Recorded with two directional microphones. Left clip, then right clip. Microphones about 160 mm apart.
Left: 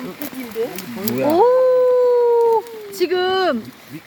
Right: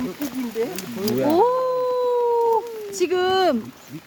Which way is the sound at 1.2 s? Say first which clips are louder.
Left 4 dB; 5° left (ahead or behind).